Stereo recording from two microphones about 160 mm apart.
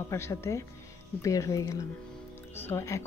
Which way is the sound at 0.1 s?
15° left (ahead or behind).